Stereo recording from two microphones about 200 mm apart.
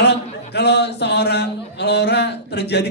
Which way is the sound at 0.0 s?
60° left (ahead or behind).